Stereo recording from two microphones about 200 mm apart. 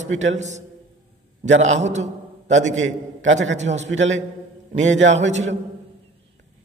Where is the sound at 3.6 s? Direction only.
35° right (ahead or behind).